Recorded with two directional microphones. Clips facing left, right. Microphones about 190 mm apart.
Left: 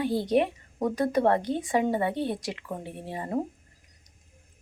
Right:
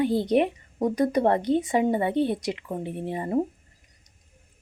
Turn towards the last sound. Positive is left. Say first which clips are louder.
# right 5 dB
turn(degrees=-20)  # may be behind; listen again after turning